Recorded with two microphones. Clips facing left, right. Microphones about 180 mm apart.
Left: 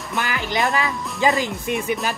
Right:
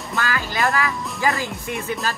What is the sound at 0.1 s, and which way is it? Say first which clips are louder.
Speech: left 1 dB; 20° left (ahead or behind).